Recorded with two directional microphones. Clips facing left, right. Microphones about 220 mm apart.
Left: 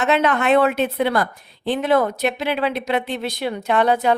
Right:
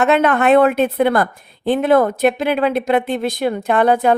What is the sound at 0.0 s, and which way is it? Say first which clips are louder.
A woman's voice: right 4 dB; 55° right (ahead or behind).